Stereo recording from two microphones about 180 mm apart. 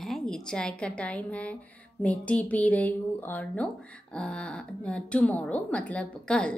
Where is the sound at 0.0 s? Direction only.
Centre (ahead or behind).